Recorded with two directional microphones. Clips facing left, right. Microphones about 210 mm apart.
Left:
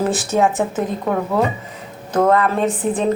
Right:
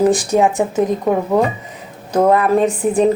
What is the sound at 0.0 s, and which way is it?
Speech, 15° right (ahead or behind).